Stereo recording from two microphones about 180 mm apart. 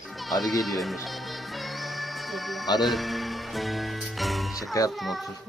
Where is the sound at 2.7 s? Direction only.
Centre (ahead or behind).